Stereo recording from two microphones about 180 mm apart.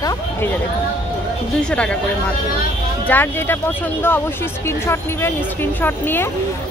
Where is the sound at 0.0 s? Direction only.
20° left (ahead or behind).